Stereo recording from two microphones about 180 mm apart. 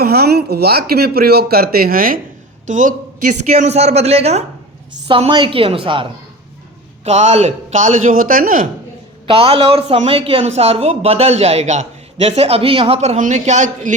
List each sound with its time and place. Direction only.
0.0 s a man's voice: 60° right (ahead or behind)
9.2 s a man's voice: 30° right (ahead or behind)